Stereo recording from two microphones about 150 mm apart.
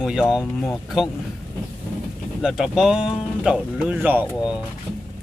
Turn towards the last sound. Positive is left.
turn(degrees=-10)  # may be behind; listen again after turning